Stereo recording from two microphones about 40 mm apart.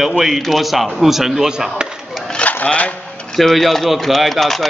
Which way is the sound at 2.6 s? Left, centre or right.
Left.